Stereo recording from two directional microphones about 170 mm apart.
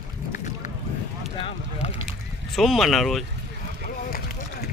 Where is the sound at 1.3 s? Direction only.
35° left (ahead or behind).